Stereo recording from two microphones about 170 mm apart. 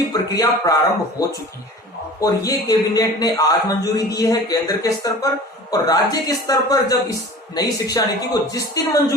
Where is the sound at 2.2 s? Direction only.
20° left (ahead or behind).